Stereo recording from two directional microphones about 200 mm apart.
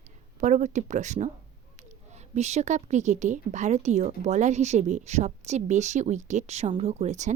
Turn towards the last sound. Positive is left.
turn(degrees=-35)  # may be behind; listen again after turning